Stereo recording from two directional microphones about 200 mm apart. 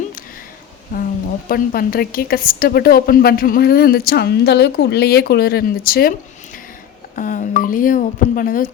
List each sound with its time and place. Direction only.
0.9 s a woman's voice: 45° left (ahead or behind)
7.2 s speech: 40° left (ahead or behind)